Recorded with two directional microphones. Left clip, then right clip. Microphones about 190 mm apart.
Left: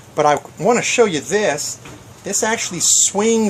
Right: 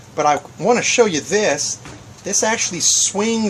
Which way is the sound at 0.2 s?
35° left (ahead or behind).